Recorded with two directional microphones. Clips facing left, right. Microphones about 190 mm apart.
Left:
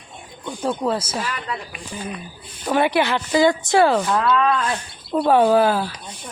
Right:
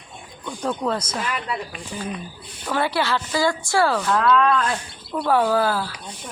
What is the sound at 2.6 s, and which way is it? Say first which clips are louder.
Speech: left 4 dB; 20° left (ahead or behind).